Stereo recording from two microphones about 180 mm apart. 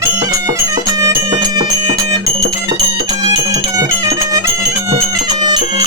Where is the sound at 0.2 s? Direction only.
20° right (ahead or behind).